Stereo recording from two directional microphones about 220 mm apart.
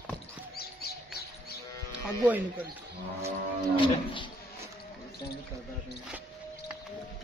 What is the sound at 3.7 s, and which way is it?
Cattle, 20° left (ahead or behind).